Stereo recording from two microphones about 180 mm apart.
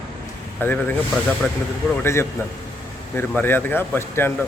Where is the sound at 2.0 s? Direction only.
15° left (ahead or behind).